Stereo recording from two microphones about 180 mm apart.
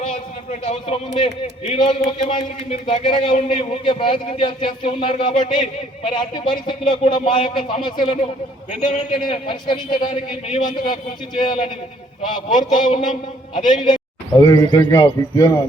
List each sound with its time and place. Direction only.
0.6 s a man's voice: 30° left (ahead or behind)
12.5 s a man's voice: 45° left (ahead or behind)
13.7 s speech: 25° left (ahead or behind)